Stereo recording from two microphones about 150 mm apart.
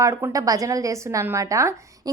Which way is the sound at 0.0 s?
20° right (ahead or behind).